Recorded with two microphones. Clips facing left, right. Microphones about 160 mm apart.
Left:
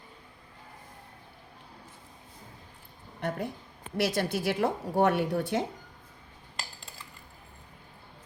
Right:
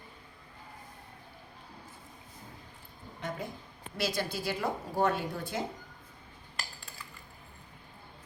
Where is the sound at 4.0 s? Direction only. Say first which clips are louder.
Left 5 dB; 70° left (ahead or behind).